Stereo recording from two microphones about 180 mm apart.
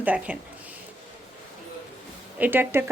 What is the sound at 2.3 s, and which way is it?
Speech, 10° right (ahead or behind).